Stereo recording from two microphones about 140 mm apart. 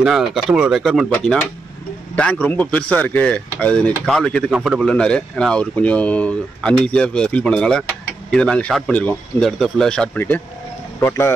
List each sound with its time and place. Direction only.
0.0 s a man's voice: 5° right (ahead or behind)
4.9 s a man's voice: 5° left (ahead or behind)